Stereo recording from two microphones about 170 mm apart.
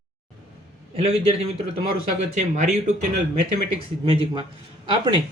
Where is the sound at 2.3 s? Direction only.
45° right (ahead or behind).